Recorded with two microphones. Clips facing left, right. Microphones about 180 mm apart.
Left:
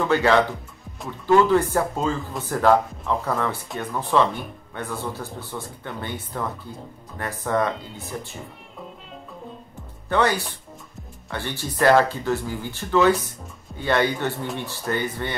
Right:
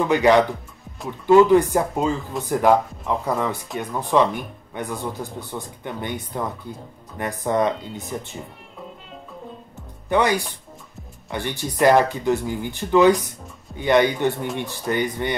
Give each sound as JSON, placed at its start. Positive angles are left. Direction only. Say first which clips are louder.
{"t": 0.0, "sound": "speech", "louder": "right 3 dB", "side_deg": -15}
{"t": 10.0, "sound": "speech", "louder": "right 2 dB", "side_deg": -15}